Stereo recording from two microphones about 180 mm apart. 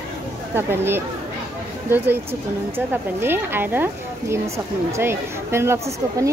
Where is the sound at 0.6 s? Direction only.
10° right (ahead or behind).